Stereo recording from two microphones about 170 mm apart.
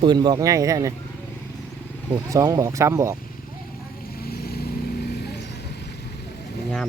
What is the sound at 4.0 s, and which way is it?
Vehicle, 60° left (ahead or behind).